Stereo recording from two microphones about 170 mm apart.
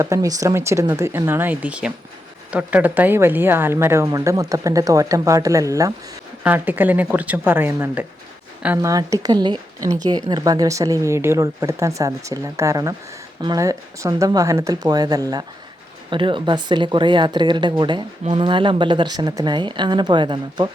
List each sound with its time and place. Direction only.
0.0 s a woman's voice: 20° right (ahead or behind)